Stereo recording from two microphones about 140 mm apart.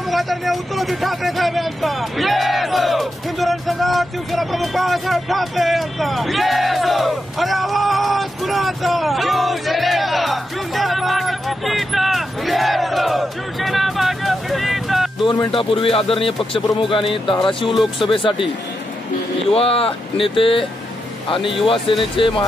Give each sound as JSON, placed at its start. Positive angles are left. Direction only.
{"t": 0.1, "sound": "speech", "side_deg": 0}
{"t": 15.2, "sound": "speech", "side_deg": 40}
{"t": 19.5, "sound": "speech", "side_deg": 45}